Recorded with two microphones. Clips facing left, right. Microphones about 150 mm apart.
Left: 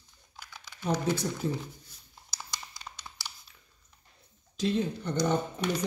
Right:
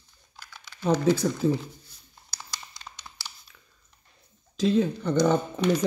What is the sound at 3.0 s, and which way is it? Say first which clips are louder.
Computer keyboard: even; centre (ahead or behind).